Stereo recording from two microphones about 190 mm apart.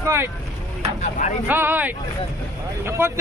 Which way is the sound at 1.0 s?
40° left (ahead or behind).